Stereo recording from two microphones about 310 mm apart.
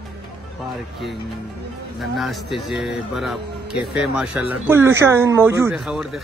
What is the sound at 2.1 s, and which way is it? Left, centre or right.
Speech, centre.